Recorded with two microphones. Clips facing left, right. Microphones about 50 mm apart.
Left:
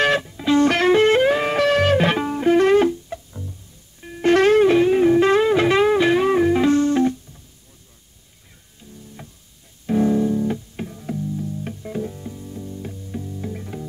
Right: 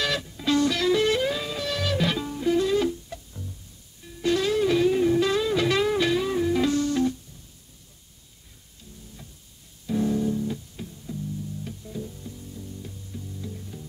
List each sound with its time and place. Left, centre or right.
0.0 s music: left
0.3 s music: left
0.6 s music: left
2.9 s music: left
4.0 s music: left
9.8 s music: left
10.9 s music: left
12.2 s music: left